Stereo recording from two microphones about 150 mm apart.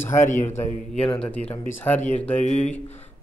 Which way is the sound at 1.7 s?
10° left (ahead or behind).